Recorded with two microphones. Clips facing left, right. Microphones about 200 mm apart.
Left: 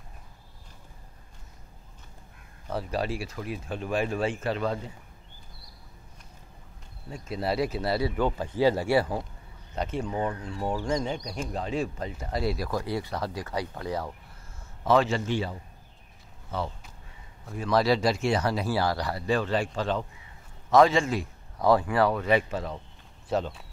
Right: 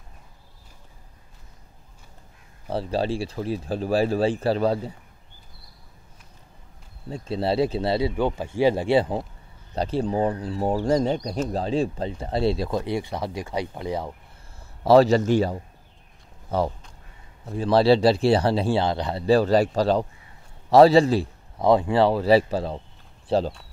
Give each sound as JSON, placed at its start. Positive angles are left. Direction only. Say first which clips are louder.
{"t": 2.7, "sound": "speech", "louder": "right 5 dB", "side_deg": -30}
{"t": 7.1, "sound": "speech", "louder": "right 5 dB", "side_deg": -30}
{"t": 8.2, "sound": "speech", "louder": "right 3 dB", "side_deg": -15}
{"t": 9.8, "sound": "speech", "louder": "right 6 dB", "side_deg": -35}
{"t": 14.8, "sound": "speech", "louder": "right 8 dB", "side_deg": -35}
{"t": 17.5, "sound": "speech", "louder": "right 6 dB", "side_deg": -30}